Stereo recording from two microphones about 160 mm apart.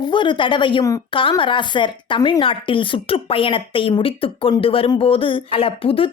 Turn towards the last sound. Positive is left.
turn(degrees=35)  # may be behind; listen again after turning